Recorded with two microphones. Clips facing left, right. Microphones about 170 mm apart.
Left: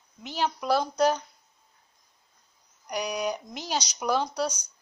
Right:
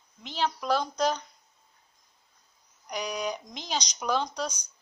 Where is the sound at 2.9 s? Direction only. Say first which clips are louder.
Left 3 dB; 10° left (ahead or behind).